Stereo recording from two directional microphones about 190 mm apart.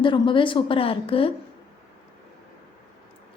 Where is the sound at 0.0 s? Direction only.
25° left (ahead or behind).